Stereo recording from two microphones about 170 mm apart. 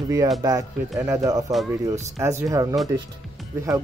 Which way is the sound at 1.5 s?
Centre (ahead or behind).